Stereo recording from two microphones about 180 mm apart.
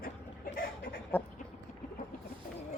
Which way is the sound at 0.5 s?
50° left (ahead or behind).